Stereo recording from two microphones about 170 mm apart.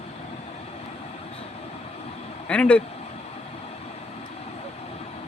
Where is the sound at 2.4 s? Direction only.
5° left (ahead or behind).